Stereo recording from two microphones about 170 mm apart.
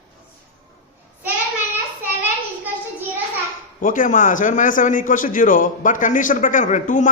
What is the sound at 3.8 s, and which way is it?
A man's voice, 50° left (ahead or behind).